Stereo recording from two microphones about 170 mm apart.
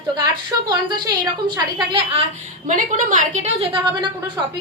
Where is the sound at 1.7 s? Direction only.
30° right (ahead or behind).